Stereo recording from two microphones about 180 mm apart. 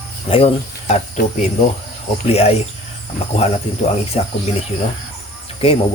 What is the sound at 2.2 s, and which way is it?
Speech, 35° left (ahead or behind).